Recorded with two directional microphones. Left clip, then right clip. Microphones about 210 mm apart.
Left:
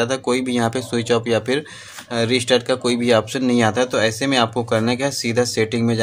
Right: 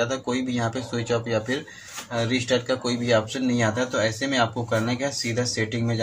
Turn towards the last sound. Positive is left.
turn(degrees=50)  # may be behind; listen again after turning